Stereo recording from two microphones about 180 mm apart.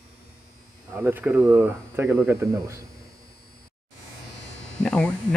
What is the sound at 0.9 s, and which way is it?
Speech, 10° right (ahead or behind).